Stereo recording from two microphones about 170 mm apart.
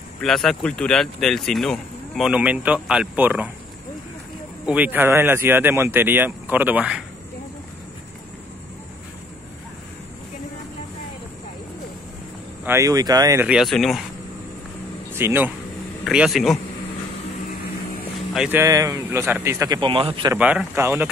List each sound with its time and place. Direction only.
0.2 s speech: centre (ahead or behind)
4.6 s speech: 10° right (ahead or behind)
12.6 s speech: 20° right (ahead or behind)
13.4 s speech: 5° right (ahead or behind)
15.1 s speech: 15° right (ahead or behind)
16.0 s speech: centre (ahead or behind)
18.3 s speech: 10° right (ahead or behind); by 20.3 s 30° right (ahead or behind)
20.3 s speech: 10° right (ahead or behind)